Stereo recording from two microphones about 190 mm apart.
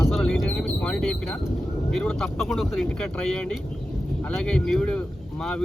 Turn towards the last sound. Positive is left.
turn(degrees=5)  # may be behind; listen again after turning